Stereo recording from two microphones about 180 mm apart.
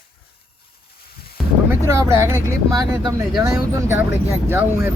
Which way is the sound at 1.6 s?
15° right (ahead or behind).